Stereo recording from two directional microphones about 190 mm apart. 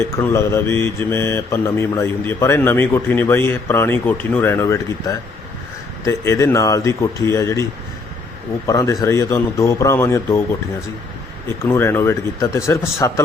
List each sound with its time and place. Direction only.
0.0 s speech: 15° left (ahead or behind)
11.6 s speech: 15° left (ahead or behind)